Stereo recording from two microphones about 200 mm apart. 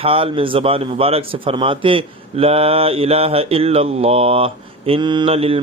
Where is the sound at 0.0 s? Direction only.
30° right (ahead or behind).